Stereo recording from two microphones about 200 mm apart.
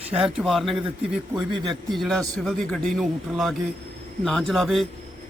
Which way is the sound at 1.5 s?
25° right (ahead or behind).